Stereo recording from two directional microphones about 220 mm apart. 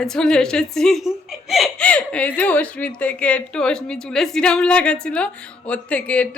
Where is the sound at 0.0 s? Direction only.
5° left (ahead or behind).